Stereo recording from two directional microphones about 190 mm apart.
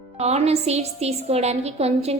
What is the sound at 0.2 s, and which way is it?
A woman's voice, 35° right (ahead or behind).